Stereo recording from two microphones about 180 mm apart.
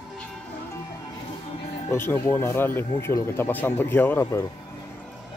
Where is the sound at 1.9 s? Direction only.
15° left (ahead or behind).